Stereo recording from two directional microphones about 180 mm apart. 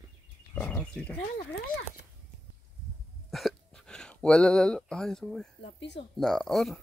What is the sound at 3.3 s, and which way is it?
Hiccup, centre (ahead or behind).